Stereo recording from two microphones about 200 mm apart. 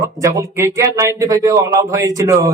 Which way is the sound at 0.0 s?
15° right (ahead or behind).